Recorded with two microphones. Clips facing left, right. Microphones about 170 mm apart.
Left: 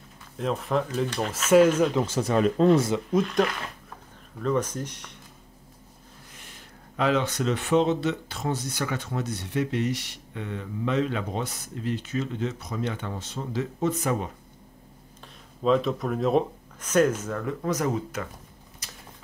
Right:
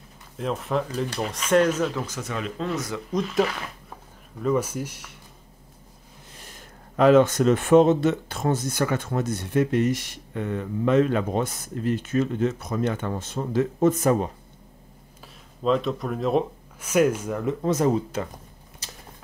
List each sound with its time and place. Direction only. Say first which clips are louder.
0.4 s speech: even; centre (ahead or behind)
2.0 s speech: left 7 dB; 30° left (ahead or behind)
3.1 s speech: right 4 dB; centre (ahead or behind)
6.3 s speech: right 5 dB; 40° right (ahead or behind)
15.6 s speech: even; centre (ahead or behind); by 18.3 s 30° right (ahead or behind)
18.8 s a sound: right 3 dB; 30° right (ahead or behind)